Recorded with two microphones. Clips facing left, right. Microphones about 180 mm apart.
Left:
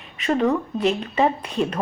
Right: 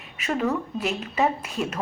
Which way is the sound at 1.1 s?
5° right (ahead or behind).